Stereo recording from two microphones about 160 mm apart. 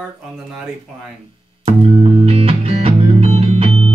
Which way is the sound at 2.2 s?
35° right (ahead or behind).